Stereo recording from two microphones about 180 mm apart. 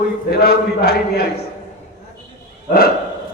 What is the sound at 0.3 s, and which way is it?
A man's voice, 60° left (ahead or behind).